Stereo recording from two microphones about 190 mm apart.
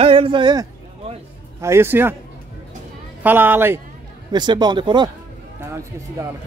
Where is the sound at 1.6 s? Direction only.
15° right (ahead or behind).